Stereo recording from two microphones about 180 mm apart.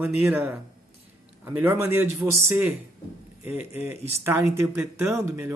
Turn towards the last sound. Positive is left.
turn(degrees=-15)  # may be behind; listen again after turning